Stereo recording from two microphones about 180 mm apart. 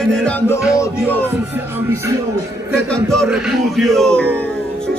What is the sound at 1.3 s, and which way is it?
Speech, 10° right (ahead or behind).